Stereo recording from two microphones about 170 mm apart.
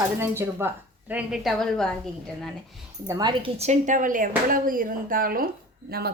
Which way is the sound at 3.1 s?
25° right (ahead or behind).